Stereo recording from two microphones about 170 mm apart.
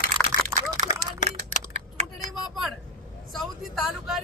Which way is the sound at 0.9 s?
50° left (ahead or behind).